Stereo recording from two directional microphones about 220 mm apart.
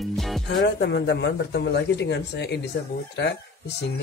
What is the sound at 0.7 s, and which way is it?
Speech, 50° left (ahead or behind).